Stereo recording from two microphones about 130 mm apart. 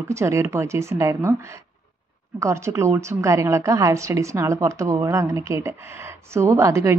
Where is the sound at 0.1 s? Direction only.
20° right (ahead or behind).